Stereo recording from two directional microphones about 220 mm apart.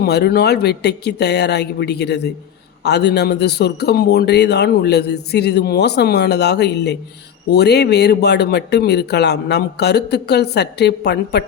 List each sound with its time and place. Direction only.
0.0 s speech: 45° left (ahead or behind)